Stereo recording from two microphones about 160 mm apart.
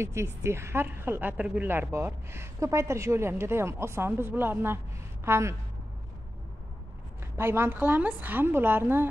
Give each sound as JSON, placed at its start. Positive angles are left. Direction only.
{"t": 0.0, "sound": "a woman's voice", "side_deg": -15}
{"t": 7.3, "sound": "a woman's voice", "side_deg": -15}